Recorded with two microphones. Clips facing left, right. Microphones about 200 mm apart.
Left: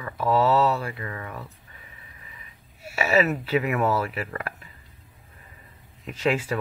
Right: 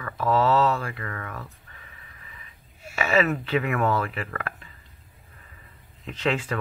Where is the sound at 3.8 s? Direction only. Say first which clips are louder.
Left 1 dB; 5° left (ahead or behind).